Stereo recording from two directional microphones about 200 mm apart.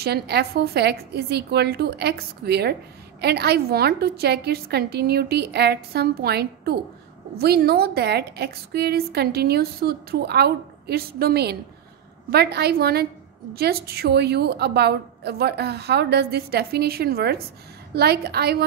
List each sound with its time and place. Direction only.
0.0 s a woman's voice: 55° right (ahead or behind)